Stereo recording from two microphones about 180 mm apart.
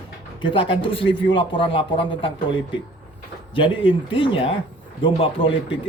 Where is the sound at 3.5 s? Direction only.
30° left (ahead or behind).